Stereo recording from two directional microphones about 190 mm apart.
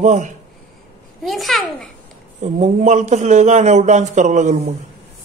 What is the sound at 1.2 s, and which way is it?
Babbling, centre (ahead or behind).